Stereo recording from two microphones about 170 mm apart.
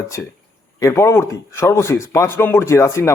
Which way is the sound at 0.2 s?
90° left.